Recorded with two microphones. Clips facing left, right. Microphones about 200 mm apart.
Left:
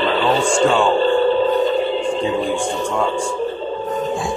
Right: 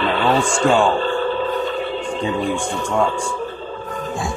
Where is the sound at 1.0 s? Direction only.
30° left (ahead or behind).